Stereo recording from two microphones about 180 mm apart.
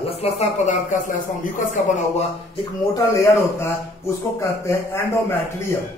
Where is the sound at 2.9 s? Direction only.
15° left (ahead or behind).